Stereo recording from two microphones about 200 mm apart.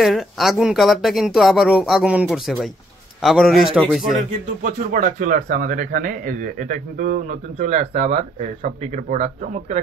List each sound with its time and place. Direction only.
0.0 s speech: centre (ahead or behind)
4.6 s speech: 45° right (ahead or behind)